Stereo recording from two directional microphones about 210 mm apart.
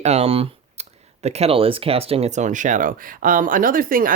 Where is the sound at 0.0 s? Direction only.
30° right (ahead or behind).